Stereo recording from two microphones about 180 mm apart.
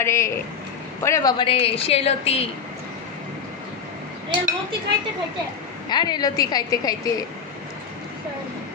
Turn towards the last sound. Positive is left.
turn(degrees=20)  # may be behind; listen again after turning